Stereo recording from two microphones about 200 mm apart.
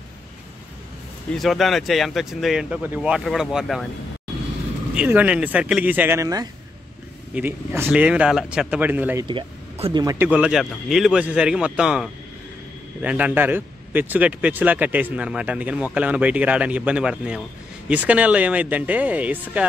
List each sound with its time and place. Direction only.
1.3 s speech: centre (ahead or behind)
4.9 s a man's voice: 5° right (ahead or behind)
9.2 s speech: 25° right (ahead or behind)
10.0 s a man's voice: 10° right (ahead or behind)